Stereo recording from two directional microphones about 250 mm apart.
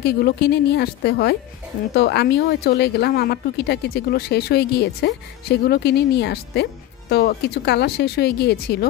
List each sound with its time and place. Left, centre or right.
0.0 s speech: left